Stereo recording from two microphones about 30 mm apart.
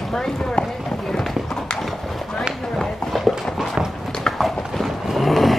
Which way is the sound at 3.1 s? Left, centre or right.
Centre.